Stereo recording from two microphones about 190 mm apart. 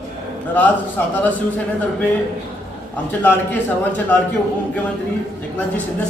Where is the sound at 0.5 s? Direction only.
10° left (ahead or behind).